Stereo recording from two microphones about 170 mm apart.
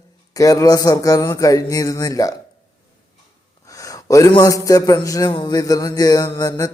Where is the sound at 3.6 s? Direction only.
20° left (ahead or behind).